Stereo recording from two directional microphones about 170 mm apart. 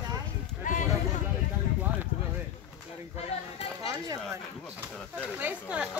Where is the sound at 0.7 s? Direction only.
50° left (ahead or behind).